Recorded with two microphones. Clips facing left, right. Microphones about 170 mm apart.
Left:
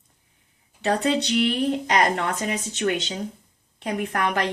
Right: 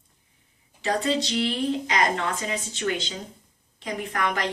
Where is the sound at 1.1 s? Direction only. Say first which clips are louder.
Left 4 dB; 60° left (ahead or behind).